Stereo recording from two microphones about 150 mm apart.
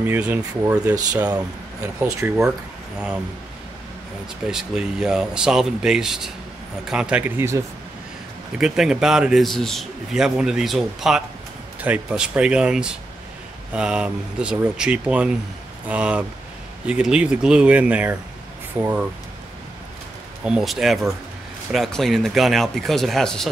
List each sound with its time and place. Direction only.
0.0 s speech: 10° right (ahead or behind)
4.5 s a man's voice: 5° right (ahead or behind)
8.5 s a man's voice: 5° right (ahead or behind)
20.4 s a man's voice: 5° right (ahead or behind)